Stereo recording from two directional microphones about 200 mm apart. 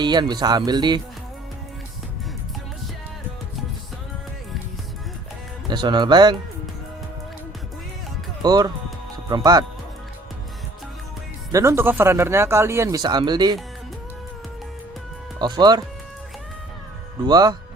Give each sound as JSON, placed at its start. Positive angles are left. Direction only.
{"t": 0.0, "sound": "speech", "side_deg": -20}
{"t": 5.6, "sound": "speech", "side_deg": -20}
{"t": 8.4, "sound": "speech", "side_deg": -20}
{"t": 11.5, "sound": "speech", "side_deg": -15}
{"t": 15.4, "sound": "speech", "side_deg": -20}
{"t": 17.2, "sound": "speech", "side_deg": -20}